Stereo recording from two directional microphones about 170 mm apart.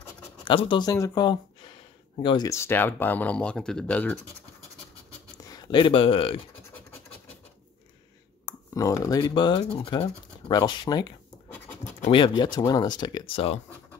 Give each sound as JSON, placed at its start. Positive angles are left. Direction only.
{"t": 0.5, "sound": "speech", "side_deg": 30}
{"t": 5.4, "sound": "speech", "side_deg": 25}
{"t": 8.5, "sound": "speech", "side_deg": 20}
{"t": 11.8, "sound": "scratch", "side_deg": 40}
{"t": 12.2, "sound": "speech", "side_deg": 25}